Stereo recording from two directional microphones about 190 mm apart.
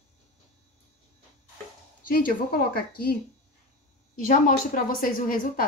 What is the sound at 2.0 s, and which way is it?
A woman's voice, 50° left (ahead or behind).